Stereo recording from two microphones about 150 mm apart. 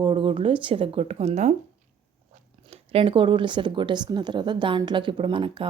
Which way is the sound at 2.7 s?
40° right (ahead or behind).